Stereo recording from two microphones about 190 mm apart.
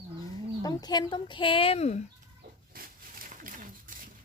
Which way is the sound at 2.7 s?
50° right (ahead or behind).